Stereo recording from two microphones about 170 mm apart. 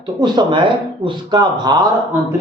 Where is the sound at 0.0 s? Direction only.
25° right (ahead or behind).